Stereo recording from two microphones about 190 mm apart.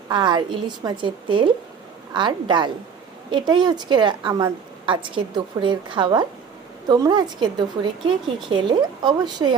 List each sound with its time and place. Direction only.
0.1 s a woman's voice: 25° right (ahead or behind)